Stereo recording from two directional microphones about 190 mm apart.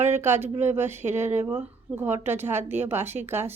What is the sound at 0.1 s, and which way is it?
Speech, 10° right (ahead or behind).